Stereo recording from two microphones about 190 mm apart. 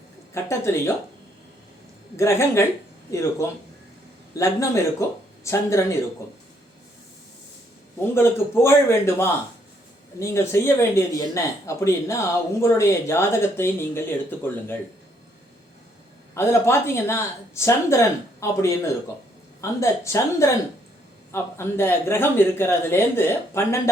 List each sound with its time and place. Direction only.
0.4 s speech: 15° left (ahead or behind)
2.1 s speech: 15° left (ahead or behind)
8.1 s speech: 15° left (ahead or behind)
16.3 s speech: 15° left (ahead or behind)